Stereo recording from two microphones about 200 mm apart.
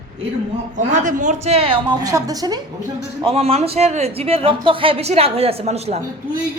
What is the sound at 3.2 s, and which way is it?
Speech, 30° right (ahead or behind).